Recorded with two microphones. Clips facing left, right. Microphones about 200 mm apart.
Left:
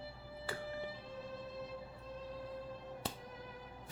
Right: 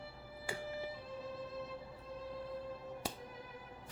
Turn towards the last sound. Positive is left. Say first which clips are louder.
# right 1 dB
turn(degrees=-10)  # may be behind; listen again after turning